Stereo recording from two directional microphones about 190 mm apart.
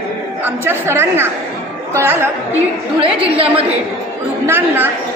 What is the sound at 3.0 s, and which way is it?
Speech, 30° right (ahead or behind).